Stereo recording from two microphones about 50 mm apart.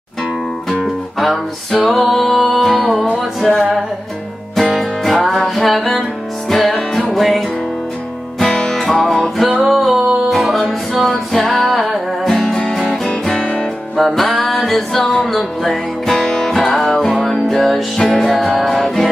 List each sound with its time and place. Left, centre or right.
1.2 s music: centre
7.2 s music: centre
8.4 s music: centre
11.7 s music: centre
12.3 s music: centre
13.2 s music: centre
13.9 s music: centre